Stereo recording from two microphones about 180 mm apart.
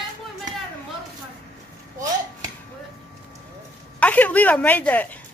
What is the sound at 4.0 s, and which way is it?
A woman's voice, 10° left (ahead or behind).